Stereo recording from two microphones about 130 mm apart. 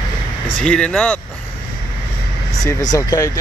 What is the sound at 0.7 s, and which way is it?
Speech, 10° left (ahead or behind).